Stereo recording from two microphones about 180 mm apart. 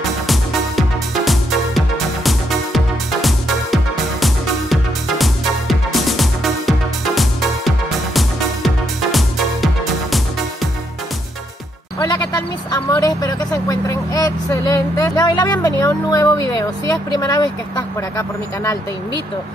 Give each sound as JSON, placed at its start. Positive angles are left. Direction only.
{"t": 0.3, "sound": "music", "side_deg": 0}
{"t": 12.7, "sound": "vehicle", "side_deg": 20}